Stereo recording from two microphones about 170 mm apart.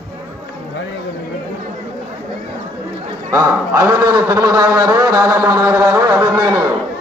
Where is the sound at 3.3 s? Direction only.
20° right (ahead or behind).